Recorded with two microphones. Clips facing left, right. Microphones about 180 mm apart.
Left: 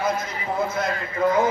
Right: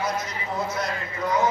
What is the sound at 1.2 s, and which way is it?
Speech, 55° left (ahead or behind).